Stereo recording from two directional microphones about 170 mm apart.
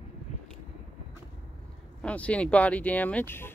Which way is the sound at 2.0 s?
5° left (ahead or behind).